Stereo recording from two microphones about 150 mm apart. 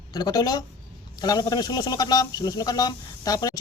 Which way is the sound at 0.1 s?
25° left (ahead or behind).